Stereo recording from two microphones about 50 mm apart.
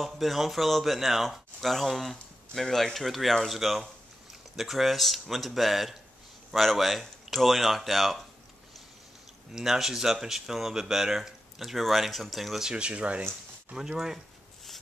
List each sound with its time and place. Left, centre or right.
0.0 s speech: centre
9.5 s speech: centre
12.6 s speech: right
13.7 s speech: centre